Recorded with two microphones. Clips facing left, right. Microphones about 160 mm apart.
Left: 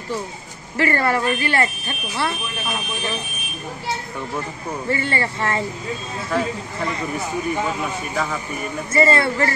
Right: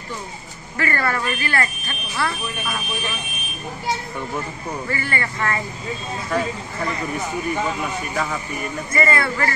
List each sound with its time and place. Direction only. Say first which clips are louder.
0.7 s speech: left 4 dB; 25° left (ahead or behind)
4.8 s speech: left 5 dB; 25° left (ahead or behind)
6.3 s speech: left 1 dB; centre (ahead or behind)
8.9 s speech: left 4 dB; 25° left (ahead or behind)